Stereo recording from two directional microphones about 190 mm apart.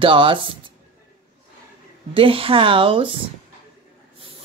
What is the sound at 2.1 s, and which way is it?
Speech, 30° right (ahead or behind).